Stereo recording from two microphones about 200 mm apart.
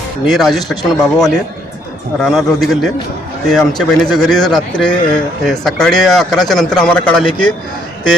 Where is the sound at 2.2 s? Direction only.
Centre (ahead or behind).